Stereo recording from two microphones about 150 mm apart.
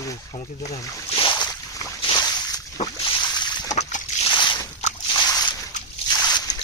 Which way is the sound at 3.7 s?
50° left (ahead or behind).